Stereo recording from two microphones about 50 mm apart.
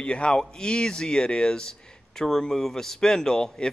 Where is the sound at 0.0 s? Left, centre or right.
Left.